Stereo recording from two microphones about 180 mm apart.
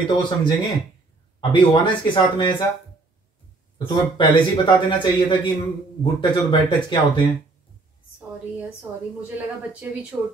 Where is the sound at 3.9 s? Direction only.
25° left (ahead or behind).